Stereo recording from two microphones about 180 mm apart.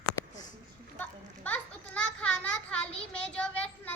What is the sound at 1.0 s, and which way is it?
Children playing, 10° left (ahead or behind).